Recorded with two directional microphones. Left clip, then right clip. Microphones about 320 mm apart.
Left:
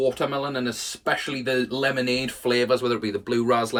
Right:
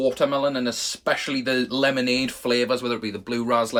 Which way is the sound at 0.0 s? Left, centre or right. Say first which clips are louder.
Right 3 dB; centre.